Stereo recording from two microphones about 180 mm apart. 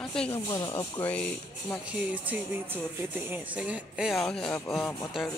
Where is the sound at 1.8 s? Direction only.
5° right (ahead or behind).